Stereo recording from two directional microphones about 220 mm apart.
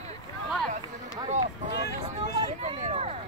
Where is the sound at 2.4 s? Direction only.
25° right (ahead or behind).